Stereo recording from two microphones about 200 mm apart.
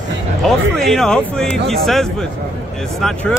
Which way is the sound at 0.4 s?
Centre (ahead or behind).